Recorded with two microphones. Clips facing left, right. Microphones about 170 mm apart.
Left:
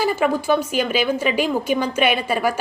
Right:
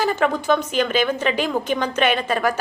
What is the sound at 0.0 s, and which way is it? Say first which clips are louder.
A woman's voice: left 1 dB; 10° left (ahead or behind).